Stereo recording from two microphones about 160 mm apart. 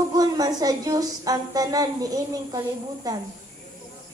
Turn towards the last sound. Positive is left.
turn(degrees=-25)  # may be behind; listen again after turning